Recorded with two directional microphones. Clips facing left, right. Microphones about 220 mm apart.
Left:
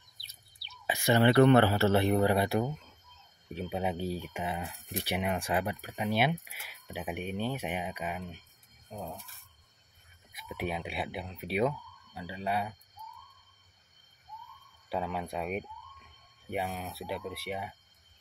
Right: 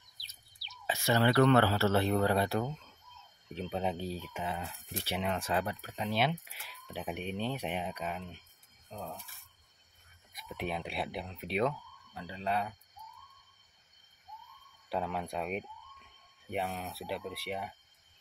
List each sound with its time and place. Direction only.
0.8 s speech: 15° left (ahead or behind)
10.3 s speech: 5° left (ahead or behind)
14.9 s speech: centre (ahead or behind)